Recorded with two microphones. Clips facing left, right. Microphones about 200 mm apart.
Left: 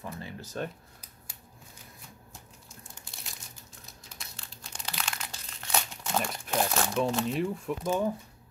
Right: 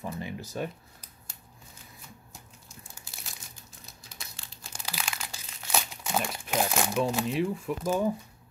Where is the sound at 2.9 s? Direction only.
5° right (ahead or behind).